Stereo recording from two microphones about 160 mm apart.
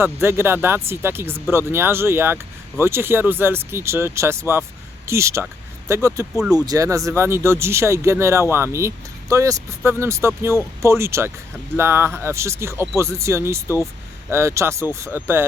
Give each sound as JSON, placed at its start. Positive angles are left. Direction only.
{"t": 0.0, "sound": "speech", "side_deg": -15}